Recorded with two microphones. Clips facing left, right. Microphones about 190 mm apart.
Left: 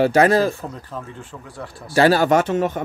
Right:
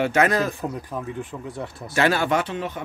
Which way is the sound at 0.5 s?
15° right (ahead or behind).